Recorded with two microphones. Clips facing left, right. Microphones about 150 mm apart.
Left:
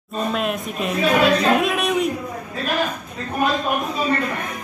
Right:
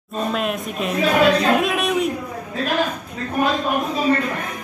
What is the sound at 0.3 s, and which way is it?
Speech, centre (ahead or behind).